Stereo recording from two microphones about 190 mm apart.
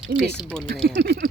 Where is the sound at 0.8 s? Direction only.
60° right (ahead or behind).